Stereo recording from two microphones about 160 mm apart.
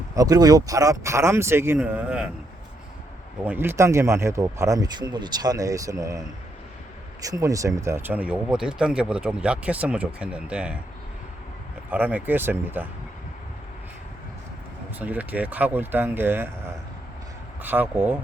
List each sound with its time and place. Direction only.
0.1 s speech: 20° right (ahead or behind); by 2.3 s 5° right (ahead or behind)
3.4 s speech: 10° right (ahead or behind)
11.9 s speech: 10° right (ahead or behind)
14.9 s speech: 10° right (ahead or behind)
17.6 s speech: 10° right (ahead or behind)